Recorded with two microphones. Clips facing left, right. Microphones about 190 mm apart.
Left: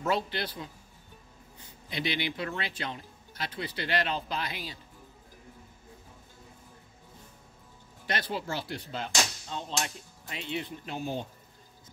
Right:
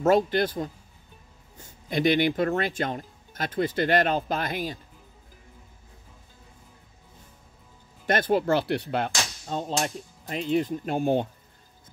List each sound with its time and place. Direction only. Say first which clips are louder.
0.0 s speech: right 9 dB; 45° right (ahead or behind)
8.1 s speech: right 11 dB; 50° right (ahead or behind)
9.5 s speech: right 7 dB; 45° right (ahead or behind)